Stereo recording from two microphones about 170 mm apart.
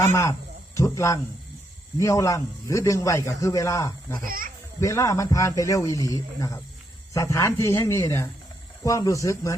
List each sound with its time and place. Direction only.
0.0 s a man's voice: 15° left (ahead or behind)
4.2 s speech: 55° right (ahead or behind)
4.8 s a man's voice: 20° left (ahead or behind)